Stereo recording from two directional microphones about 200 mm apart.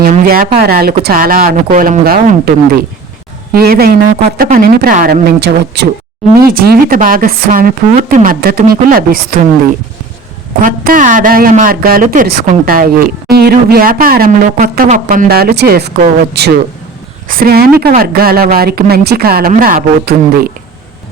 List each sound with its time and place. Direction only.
0.0 s speech: 45° right (ahead or behind)
5.4 s speech: 55° right (ahead or behind)
10.6 s speech: 40° right (ahead or behind)